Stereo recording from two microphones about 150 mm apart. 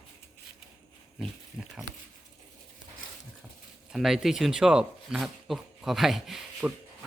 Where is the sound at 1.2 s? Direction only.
Centre (ahead or behind).